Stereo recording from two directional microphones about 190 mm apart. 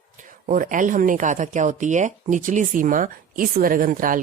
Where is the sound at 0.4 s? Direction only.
45° right (ahead or behind).